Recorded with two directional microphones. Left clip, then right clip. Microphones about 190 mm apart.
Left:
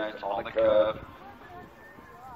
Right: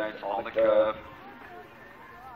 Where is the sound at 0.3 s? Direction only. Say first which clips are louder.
Even; 60° left (ahead or behind).